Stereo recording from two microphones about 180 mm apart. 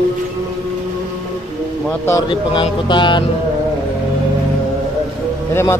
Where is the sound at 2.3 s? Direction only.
25° left (ahead or behind).